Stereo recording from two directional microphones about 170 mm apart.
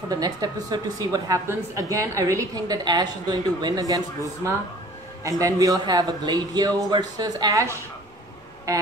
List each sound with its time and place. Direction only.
0.1 s a woman's voice: 20° right (ahead or behind)